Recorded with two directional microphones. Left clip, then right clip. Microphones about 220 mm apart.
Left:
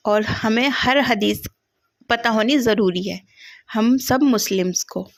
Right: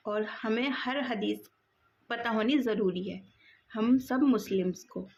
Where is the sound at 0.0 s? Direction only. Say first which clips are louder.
Left 14 dB; 45° left (ahead or behind).